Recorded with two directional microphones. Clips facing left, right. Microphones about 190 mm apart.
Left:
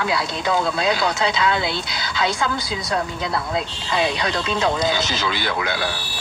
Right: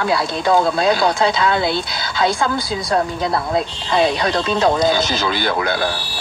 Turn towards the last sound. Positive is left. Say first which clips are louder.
# right 5 dB
turn(degrees=-45)  # may be behind; listen again after turning